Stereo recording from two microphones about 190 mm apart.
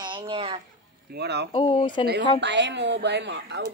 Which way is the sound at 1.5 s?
30° left (ahead or behind).